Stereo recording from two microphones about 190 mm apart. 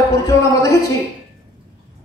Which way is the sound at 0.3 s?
15° left (ahead or behind).